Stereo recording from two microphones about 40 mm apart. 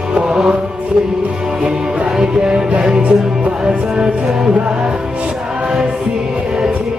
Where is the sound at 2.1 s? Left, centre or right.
Centre.